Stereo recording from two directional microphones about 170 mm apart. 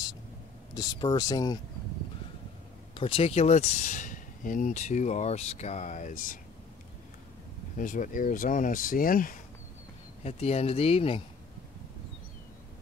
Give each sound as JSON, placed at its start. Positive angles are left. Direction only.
{"t": 0.7, "sound": "speech", "side_deg": 25}
{"t": 3.0, "sound": "speech", "side_deg": 35}
{"t": 7.7, "sound": "speech", "side_deg": 50}
{"t": 10.2, "sound": "speech", "side_deg": 40}